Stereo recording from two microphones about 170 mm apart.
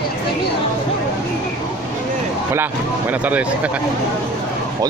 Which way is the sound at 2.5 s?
10° right (ahead or behind).